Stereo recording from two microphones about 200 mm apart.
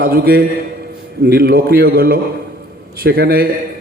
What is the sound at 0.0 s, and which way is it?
A man's voice, 50° right (ahead or behind).